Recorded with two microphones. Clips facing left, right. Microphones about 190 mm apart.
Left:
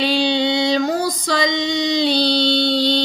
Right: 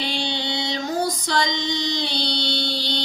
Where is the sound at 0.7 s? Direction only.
80° left.